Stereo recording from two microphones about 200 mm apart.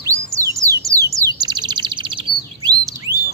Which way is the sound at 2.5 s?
20° right (ahead or behind).